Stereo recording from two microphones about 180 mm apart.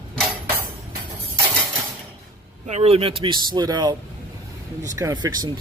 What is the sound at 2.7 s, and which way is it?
Speech, 35° right (ahead or behind).